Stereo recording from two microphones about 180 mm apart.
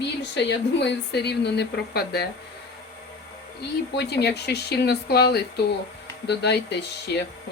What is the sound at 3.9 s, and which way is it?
Speech, 65° left (ahead or behind).